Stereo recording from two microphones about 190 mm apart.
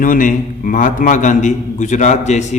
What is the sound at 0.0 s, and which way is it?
A man's voice, 45° left (ahead or behind).